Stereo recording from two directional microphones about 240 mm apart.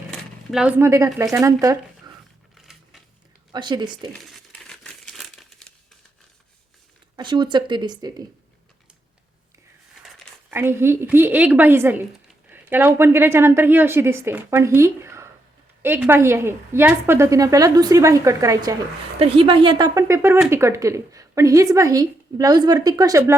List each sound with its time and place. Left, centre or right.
0.1 s speech: centre
2.1 s a sound: centre
2.6 s a sound: centre
3.5 s a woman's voice: centre
4.1 s crumpling: centre
7.2 s speech: centre
10.5 s a woman's voice: centre